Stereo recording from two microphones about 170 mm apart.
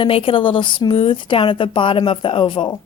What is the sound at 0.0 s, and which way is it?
A woman's voice, 30° left (ahead or behind).